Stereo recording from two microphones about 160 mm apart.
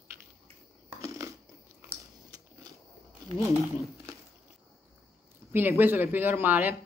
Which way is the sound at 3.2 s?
25° right (ahead or behind).